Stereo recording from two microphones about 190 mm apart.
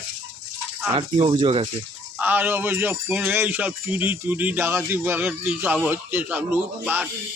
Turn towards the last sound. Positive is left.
turn(degrees=-10)  # may be behind; listen again after turning